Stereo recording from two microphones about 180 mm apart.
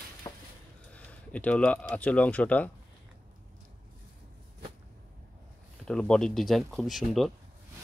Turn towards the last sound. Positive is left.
turn(degrees=0)  # may be behind; listen again after turning